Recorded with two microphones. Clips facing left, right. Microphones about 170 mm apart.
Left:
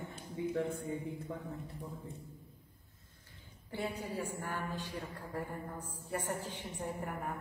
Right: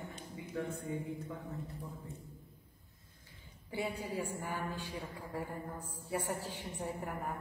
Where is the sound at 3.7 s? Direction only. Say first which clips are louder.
Right 1 dB; 10° right (ahead or behind).